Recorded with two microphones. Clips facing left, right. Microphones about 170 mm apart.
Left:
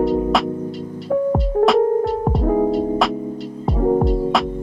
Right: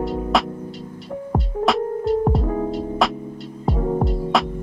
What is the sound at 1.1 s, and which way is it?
Music, 90° left.